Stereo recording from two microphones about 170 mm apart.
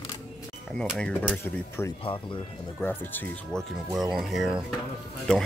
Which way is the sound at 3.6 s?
Centre (ahead or behind).